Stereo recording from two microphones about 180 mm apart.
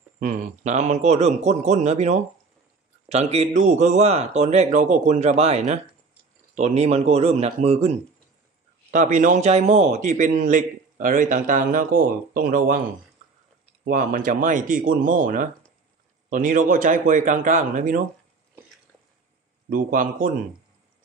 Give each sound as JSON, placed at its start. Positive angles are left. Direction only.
{"t": 0.2, "sound": "a man's voice", "side_deg": -45}
{"t": 13.8, "sound": "a man's voice", "side_deg": -50}
{"t": 19.7, "sound": "a man's voice", "side_deg": -50}